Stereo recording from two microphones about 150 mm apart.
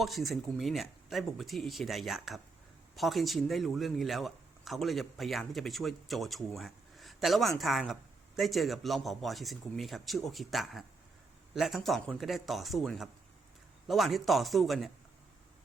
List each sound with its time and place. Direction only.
0.0 s speech: centre (ahead or behind)